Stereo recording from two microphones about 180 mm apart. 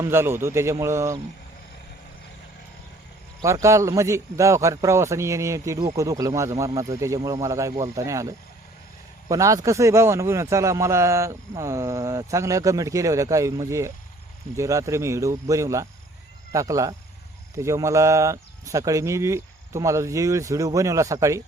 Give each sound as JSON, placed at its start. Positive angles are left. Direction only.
{"t": 0.0, "sound": "a man's voice", "side_deg": -15}
{"t": 3.4, "sound": "a man's voice", "side_deg": -15}